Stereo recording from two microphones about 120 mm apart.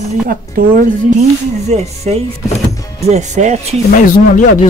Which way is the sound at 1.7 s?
65° right (ahead or behind).